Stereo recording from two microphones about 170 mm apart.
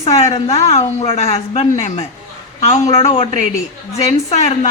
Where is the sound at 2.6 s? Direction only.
40° left (ahead or behind).